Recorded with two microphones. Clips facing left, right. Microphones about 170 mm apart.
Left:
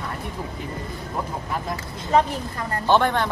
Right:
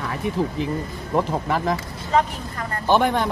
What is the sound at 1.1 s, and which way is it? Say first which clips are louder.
Speech: right 8 dB; 90° right.